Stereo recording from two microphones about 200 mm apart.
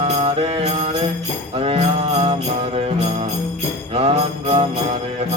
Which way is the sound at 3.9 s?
35° right (ahead or behind).